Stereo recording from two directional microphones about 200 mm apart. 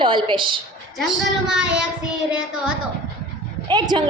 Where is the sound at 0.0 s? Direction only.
25° right (ahead or behind).